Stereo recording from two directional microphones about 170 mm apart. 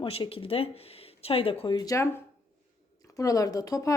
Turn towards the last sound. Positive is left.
turn(degrees=20)  # may be behind; listen again after turning